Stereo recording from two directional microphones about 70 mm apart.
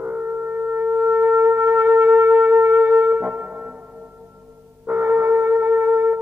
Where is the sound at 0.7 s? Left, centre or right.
Right.